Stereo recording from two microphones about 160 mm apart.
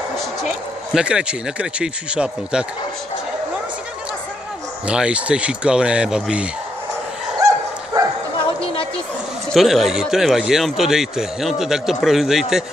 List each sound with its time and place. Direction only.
0.4 s a man's voice: 5° right (ahead or behind)
4.8 s a man's voice: 5° right (ahead or behind)
7.3 s dog: 20° right (ahead or behind)
9.5 s a man's voice: centre (ahead or behind)